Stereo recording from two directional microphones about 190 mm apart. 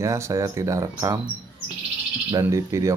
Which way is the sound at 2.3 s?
15° right (ahead or behind).